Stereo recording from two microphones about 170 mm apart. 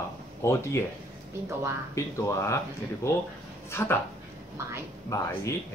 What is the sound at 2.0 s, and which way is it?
Speech, 15° left (ahead or behind).